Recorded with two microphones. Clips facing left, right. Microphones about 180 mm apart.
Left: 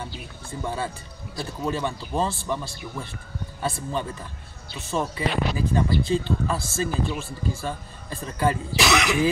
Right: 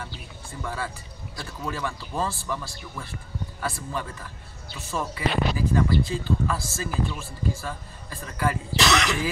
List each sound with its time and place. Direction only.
0.0 s speech: 25° left (ahead or behind)
8.7 s speech: 5° left (ahead or behind)